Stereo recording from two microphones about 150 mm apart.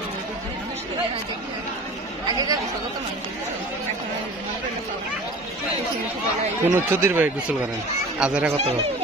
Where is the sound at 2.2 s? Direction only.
25° right (ahead or behind).